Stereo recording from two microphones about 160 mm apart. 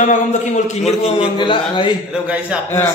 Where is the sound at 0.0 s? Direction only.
50° left (ahead or behind).